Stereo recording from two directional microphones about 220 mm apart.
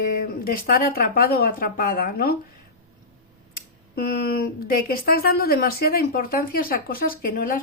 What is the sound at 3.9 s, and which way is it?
Speech, 45° left (ahead or behind).